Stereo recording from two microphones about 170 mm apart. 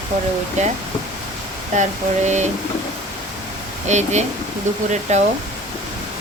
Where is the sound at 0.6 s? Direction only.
45° right (ahead or behind).